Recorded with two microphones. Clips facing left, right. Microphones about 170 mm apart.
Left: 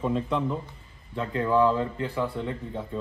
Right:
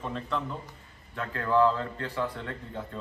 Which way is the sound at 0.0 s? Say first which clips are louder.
Left 7 dB; 10° left (ahead or behind).